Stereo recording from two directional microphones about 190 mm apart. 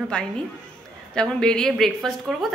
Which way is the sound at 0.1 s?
5° left (ahead or behind).